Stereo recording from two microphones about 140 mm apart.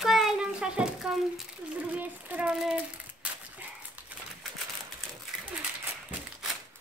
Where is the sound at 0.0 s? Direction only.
Centre (ahead or behind).